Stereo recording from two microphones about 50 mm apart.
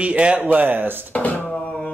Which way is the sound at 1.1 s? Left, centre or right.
Left.